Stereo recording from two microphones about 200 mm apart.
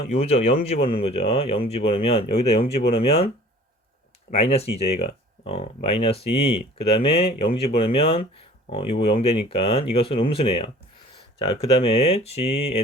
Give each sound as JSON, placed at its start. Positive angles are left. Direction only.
{"t": 0.1, "sound": "speech", "side_deg": 30}
{"t": 4.3, "sound": "speech", "side_deg": 30}